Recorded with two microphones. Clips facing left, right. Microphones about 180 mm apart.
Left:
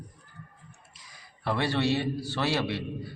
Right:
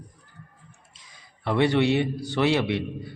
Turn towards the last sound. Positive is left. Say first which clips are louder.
# right 4 dB
turn(degrees=-20)  # may be behind; listen again after turning